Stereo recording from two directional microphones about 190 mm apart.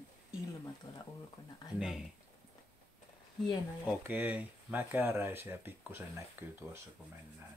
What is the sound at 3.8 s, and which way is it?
Speech, 10° right (ahead or behind).